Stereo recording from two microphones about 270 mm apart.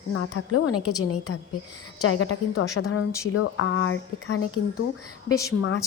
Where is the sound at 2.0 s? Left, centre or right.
Left.